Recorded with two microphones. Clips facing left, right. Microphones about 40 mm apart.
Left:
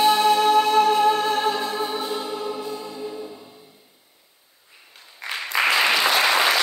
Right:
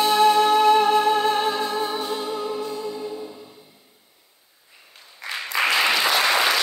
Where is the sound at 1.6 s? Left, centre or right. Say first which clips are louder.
Right 1 dB; centre.